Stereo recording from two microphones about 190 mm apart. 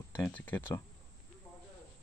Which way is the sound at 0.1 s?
10° left (ahead or behind).